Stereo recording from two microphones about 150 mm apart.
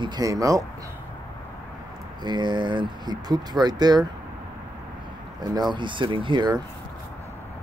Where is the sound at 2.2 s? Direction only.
30° right (ahead or behind).